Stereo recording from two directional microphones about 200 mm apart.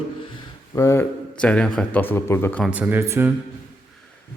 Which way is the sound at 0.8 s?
15° left (ahead or behind).